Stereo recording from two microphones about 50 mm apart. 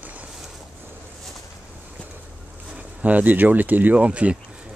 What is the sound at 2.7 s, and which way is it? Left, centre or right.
Speech, right.